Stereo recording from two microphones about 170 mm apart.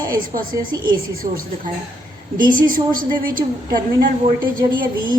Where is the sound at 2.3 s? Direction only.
55° right (ahead or behind).